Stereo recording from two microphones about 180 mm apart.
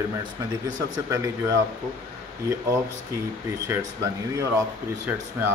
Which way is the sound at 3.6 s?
15° right (ahead or behind).